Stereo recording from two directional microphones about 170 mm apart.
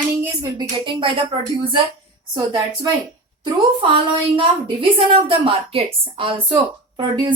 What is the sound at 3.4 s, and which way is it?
A woman's voice, 30° right (ahead or behind).